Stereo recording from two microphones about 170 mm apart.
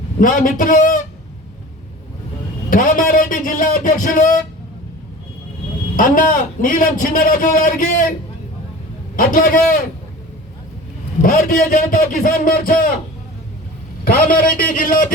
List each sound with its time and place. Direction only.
0.2 s a man's voice: 50° left (ahead or behind)
2.6 s a man's voice: 55° left (ahead or behind)
6.0 s a man's voice: 55° left (ahead or behind)
9.1 s a man's voice: 55° left (ahead or behind)
11.2 s a man's voice: 55° left (ahead or behind)
14.0 s a man's voice: 60° left (ahead or behind)